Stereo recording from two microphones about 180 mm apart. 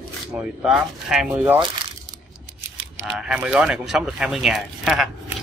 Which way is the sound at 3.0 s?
5° right (ahead or behind).